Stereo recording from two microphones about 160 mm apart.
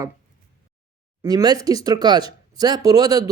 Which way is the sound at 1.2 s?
25° right (ahead or behind).